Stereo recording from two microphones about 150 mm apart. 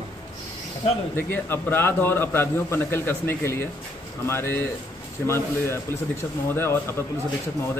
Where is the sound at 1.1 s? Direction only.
15° left (ahead or behind).